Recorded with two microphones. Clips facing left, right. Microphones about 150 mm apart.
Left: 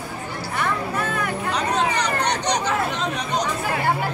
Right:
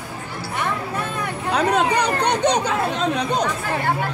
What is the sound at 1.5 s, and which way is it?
Chatter, 55° right (ahead or behind).